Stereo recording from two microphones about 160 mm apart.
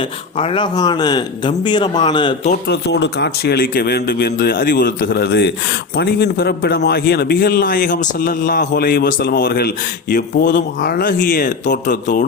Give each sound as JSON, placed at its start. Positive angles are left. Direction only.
{"t": 0.3, "sound": "speech", "side_deg": 35}
{"t": 2.6, "sound": "a man's voice", "side_deg": 90}